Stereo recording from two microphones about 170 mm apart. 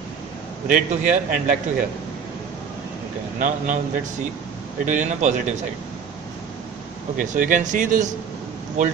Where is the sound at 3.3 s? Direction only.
50° right (ahead or behind).